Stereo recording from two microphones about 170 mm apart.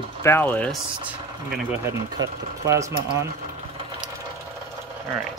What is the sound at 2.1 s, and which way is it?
Speech, 20° right (ahead or behind).